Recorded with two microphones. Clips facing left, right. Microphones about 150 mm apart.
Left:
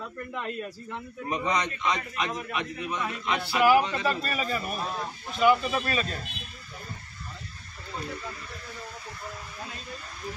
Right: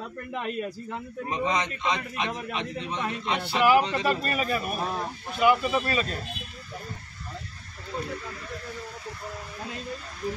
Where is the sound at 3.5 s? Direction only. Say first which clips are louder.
Even; centre (ahead or behind).